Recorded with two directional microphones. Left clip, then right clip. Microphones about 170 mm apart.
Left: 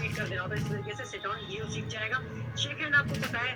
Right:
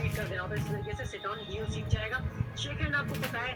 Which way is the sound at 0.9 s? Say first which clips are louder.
Left 3 dB; 20° right (ahead or behind).